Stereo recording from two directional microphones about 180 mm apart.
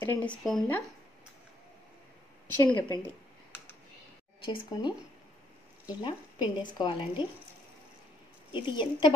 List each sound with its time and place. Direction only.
0.0 s speech: 10° left (ahead or behind)
2.7 s a woman's voice: 25° left (ahead or behind)
4.4 s a woman's voice: 30° left (ahead or behind)
8.6 s a woman's voice: 25° left (ahead or behind)